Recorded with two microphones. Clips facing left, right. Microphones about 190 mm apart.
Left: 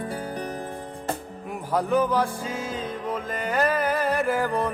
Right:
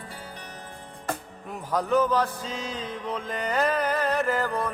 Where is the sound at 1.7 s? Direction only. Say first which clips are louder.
Left 1 dB; 10° left (ahead or behind).